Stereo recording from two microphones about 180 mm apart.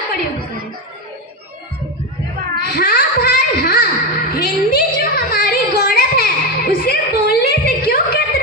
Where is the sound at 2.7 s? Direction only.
55° left (ahead or behind).